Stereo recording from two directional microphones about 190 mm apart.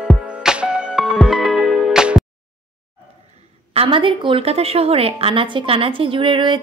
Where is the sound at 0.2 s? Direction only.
5° right (ahead or behind).